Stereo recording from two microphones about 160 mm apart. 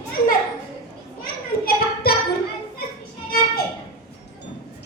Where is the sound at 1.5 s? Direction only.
70° left (ahead or behind).